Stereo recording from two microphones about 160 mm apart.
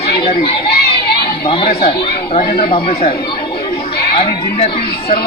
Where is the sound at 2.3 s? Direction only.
35° left (ahead or behind).